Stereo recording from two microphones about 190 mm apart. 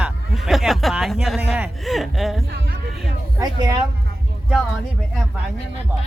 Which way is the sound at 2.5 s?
55° right (ahead or behind).